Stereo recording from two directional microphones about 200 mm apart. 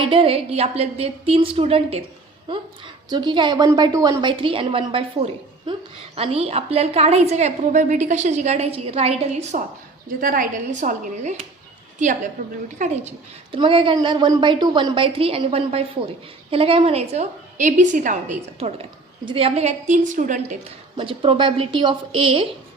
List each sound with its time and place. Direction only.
0.0 s a woman's voice: 25° right (ahead or behind)
10.2 s a woman's voice: 45° right (ahead or behind)
20.9 s a woman's voice: 25° right (ahead or behind)